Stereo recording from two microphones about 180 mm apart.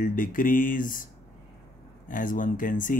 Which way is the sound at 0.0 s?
50° left (ahead or behind).